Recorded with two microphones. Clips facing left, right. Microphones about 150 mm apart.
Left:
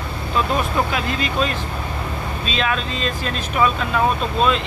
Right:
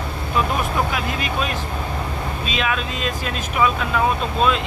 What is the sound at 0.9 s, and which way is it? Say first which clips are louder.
Speech: left 1 dB; 5° right (ahead or behind).